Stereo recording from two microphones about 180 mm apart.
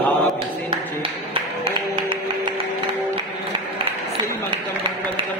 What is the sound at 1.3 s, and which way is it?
Music, 30° right (ahead or behind).